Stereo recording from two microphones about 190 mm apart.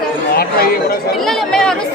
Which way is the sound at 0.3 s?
50° left (ahead or behind).